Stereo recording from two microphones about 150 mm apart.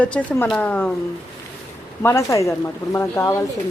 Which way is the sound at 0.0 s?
10° left (ahead or behind).